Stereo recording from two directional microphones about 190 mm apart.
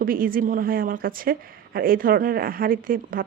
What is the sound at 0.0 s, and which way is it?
Speech, 50° right (ahead or behind).